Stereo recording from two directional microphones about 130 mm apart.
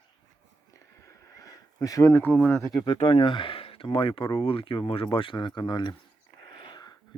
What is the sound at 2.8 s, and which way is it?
Speech, 45° left (ahead or behind).